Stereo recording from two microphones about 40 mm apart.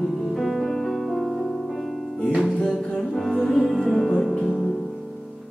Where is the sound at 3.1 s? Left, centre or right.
Centre.